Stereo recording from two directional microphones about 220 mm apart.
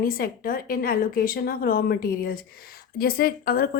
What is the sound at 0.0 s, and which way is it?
Speech, 40° left (ahead or behind).